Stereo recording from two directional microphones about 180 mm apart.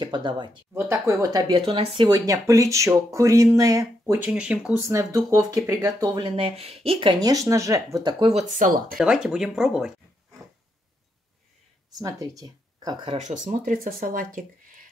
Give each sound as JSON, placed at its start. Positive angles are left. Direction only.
{"t": 0.0, "sound": "speech", "side_deg": -25}
{"t": 0.7, "sound": "speech", "side_deg": -15}
{"t": 8.5, "sound": "speech", "side_deg": -50}
{"t": 8.9, "sound": "speech", "side_deg": -5}
{"t": 12.0, "sound": "speech", "side_deg": -20}
{"t": 13.2, "sound": "speech", "side_deg": -40}